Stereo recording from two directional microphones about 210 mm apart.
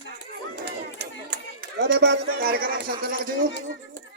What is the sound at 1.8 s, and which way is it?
A man's voice, 50° right (ahead or behind).